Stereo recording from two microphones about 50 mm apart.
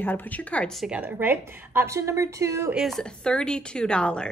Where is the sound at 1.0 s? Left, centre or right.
Right.